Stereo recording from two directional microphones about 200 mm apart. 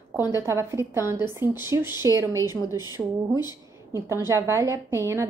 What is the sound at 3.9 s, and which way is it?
A woman's voice, 15° right (ahead or behind).